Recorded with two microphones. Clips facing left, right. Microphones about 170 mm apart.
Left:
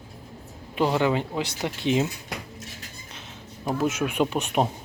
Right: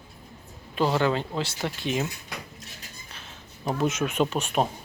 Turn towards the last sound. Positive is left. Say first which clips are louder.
# left 1 dB
turn(degrees=15)  # may be behind; listen again after turning